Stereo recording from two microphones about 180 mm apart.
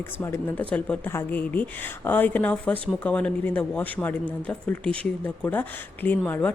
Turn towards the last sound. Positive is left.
turn(degrees=10)  # may be behind; listen again after turning